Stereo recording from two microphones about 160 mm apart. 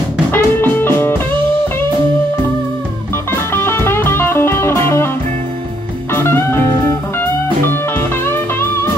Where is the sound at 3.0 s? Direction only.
15° left (ahead or behind).